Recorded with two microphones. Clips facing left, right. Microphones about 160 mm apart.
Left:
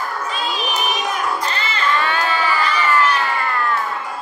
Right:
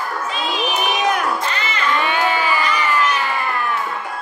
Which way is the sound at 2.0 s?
15° right (ahead or behind).